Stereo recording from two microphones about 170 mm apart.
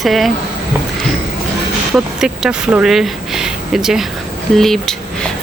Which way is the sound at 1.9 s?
5° right (ahead or behind).